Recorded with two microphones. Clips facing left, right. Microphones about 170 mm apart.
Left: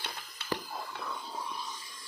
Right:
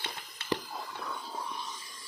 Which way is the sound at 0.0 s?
Centre (ahead or behind).